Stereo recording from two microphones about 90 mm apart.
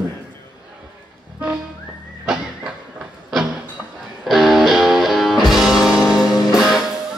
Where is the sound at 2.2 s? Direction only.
10° right (ahead or behind).